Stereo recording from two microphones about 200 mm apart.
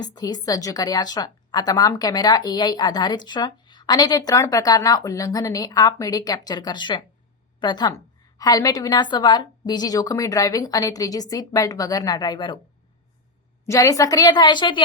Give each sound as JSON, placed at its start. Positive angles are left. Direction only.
{"t": 0.0, "sound": "a woman's voice", "side_deg": 20}
{"t": 13.7, "sound": "a woman's voice", "side_deg": 15}